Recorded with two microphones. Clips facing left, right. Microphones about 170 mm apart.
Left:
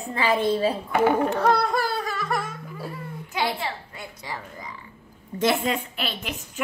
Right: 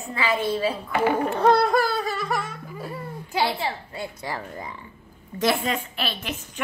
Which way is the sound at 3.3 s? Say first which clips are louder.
Right 2 dB; 30° right (ahead or behind).